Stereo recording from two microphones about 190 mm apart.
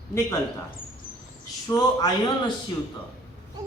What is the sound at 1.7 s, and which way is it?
Speech, 20° left (ahead or behind).